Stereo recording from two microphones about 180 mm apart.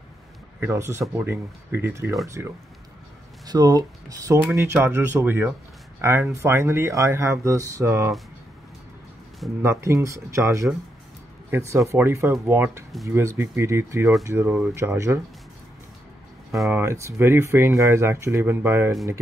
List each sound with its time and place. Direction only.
0.6 s speech: 15° right (ahead or behind)
9.6 s speech: 15° right (ahead or behind)
16.6 s speech: 15° right (ahead or behind)